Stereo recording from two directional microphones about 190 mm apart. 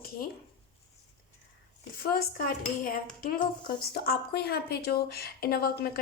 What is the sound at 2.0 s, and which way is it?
Speech, 50° left (ahead or behind).